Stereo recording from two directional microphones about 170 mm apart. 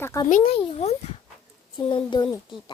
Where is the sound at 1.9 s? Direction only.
25° left (ahead or behind).